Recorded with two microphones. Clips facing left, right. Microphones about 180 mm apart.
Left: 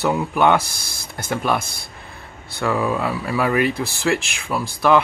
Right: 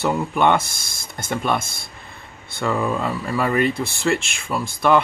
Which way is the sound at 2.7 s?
5° left (ahead or behind).